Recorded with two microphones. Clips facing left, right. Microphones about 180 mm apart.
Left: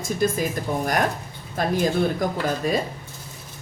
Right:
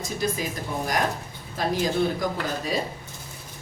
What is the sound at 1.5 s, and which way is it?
Speech, 50° left (ahead or behind).